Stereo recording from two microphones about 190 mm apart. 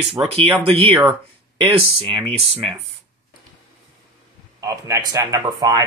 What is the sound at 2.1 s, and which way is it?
Speech, 30° right (ahead or behind).